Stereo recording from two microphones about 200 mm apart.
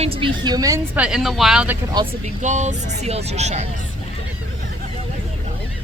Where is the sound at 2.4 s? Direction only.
35° right (ahead or behind).